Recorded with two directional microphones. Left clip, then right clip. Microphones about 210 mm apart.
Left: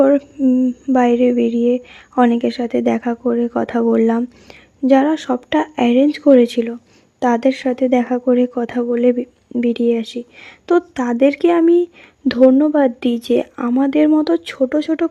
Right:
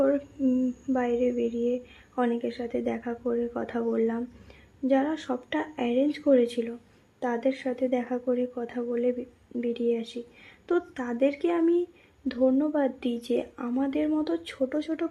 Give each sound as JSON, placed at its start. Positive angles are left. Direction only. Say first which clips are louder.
{"t": 0.0, "sound": "a woman's voice", "louder": "left 12 dB", "side_deg": 35}